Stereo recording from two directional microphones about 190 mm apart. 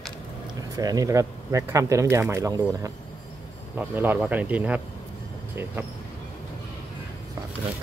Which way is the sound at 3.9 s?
10° right (ahead or behind).